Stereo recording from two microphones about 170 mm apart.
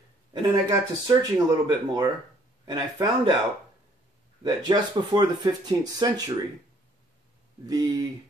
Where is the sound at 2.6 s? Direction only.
25° right (ahead or behind).